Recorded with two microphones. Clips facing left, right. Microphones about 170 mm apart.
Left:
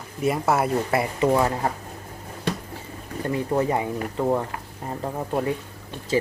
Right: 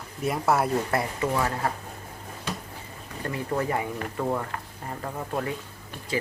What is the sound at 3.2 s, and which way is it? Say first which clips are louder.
Speech: left 5 dB; 20° left (ahead or behind).